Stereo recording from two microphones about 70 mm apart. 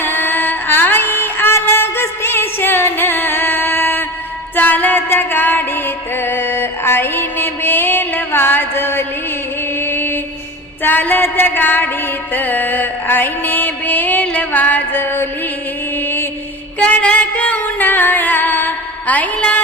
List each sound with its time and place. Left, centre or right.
0.0 s music: left
6.2 s mantra: left
9.8 s music: left
10.8 s a sound: left
12.3 s music: left
16.8 s music: centre